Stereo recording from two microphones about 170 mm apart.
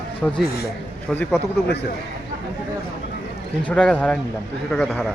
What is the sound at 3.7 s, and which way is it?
Speech, 5° left (ahead or behind).